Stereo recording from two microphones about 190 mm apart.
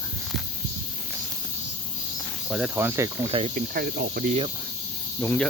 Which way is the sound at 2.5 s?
5° right (ahead or behind).